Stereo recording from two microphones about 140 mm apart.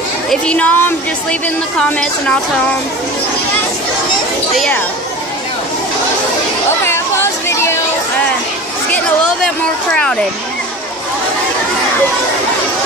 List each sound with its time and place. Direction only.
0.3 s speech: 10° left (ahead or behind)
4.6 s speech: 10° left (ahead or behind)
6.9 s chatter: 20° left (ahead or behind)